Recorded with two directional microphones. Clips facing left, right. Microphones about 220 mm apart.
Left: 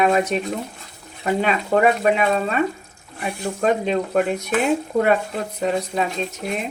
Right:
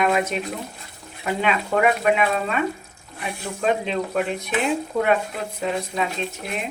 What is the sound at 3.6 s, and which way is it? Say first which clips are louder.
Speech: left 3 dB; 45° left (ahead or behind).